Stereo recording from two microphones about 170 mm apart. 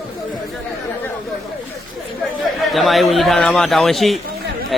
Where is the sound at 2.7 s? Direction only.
Centre (ahead or behind).